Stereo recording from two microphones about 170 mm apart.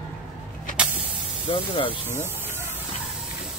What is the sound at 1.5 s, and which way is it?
Speech, 30° left (ahead or behind).